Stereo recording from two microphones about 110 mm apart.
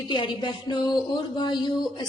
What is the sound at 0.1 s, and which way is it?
A woman's voice, 45° left (ahead or behind).